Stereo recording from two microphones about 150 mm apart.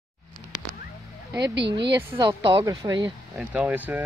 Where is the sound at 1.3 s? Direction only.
30° right (ahead or behind).